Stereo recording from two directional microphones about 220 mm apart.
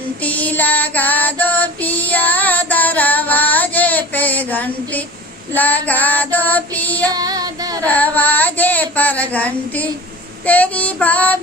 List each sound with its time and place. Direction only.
0.2 s female singing: 5° left (ahead or behind)
5.5 s child singing: 10° left (ahead or behind)
7.1 s child singing: 15° right (ahead or behind)
7.9 s child singing: 5° left (ahead or behind)